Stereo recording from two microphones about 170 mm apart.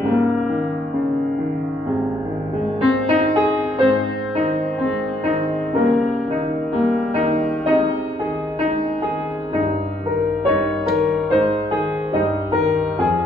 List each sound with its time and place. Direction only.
2.8 s music: centre (ahead or behind)
6.8 s music: centre (ahead or behind)
10.5 s music: centre (ahead or behind)